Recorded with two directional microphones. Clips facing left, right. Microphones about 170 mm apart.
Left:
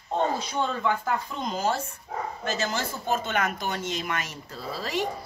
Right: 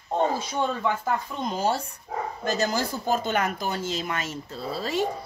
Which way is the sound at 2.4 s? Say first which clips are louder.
Right 4 dB; 40° right (ahead or behind).